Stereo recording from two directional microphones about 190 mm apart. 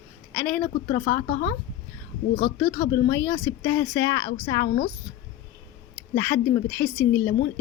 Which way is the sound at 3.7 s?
15° left (ahead or behind).